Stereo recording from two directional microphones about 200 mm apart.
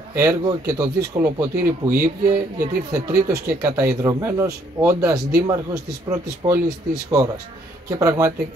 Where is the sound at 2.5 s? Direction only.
15° right (ahead or behind).